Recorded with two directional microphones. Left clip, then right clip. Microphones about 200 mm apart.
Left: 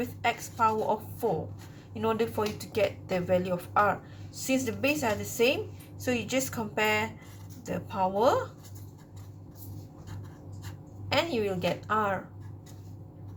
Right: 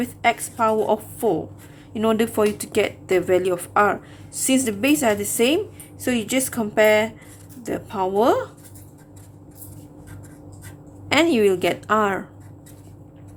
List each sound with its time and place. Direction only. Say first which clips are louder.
0.0 s a woman's voice: right 9 dB; 35° right (ahead or behind)
11.1 s speech: right 11 dB; 45° right (ahead or behind)